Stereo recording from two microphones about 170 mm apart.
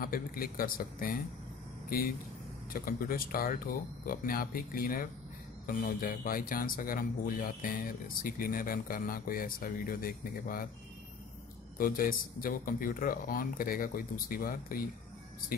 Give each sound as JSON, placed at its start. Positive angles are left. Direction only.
{"t": 0.0, "sound": "speech", "side_deg": 60}
{"t": 11.8, "sound": "speech", "side_deg": 55}